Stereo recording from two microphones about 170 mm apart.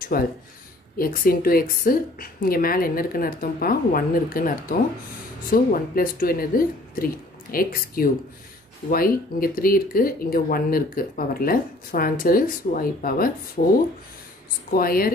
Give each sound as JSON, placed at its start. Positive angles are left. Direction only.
{"t": 0.1, "sound": "speech", "side_deg": 60}